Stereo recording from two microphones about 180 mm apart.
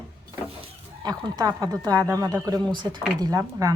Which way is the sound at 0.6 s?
25° right (ahead or behind).